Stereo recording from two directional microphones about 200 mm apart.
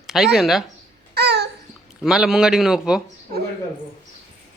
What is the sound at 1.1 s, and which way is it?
Babbling, 55° right (ahead or behind).